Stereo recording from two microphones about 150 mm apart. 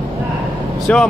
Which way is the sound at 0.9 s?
10° left (ahead or behind).